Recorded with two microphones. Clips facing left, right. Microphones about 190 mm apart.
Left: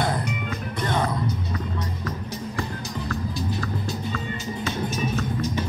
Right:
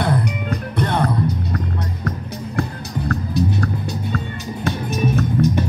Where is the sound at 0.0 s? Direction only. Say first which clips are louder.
Right 5 dB; 60° right (ahead or behind).